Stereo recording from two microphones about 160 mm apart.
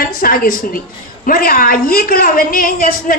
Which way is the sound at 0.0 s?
65° left (ahead or behind).